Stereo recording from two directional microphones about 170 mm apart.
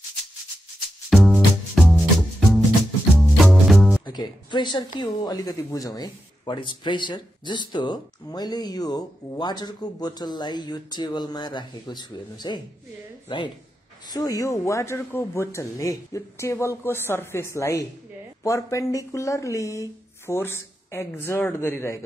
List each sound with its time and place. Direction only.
1.1 s music: centre (ahead or behind)
3.2 s music: centre (ahead or behind)
4.0 s speech: 25° left (ahead or behind)
14.1 s speech: 20° left (ahead or behind)